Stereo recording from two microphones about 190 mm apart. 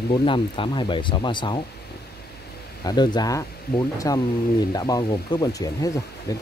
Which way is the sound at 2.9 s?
20° left (ahead or behind).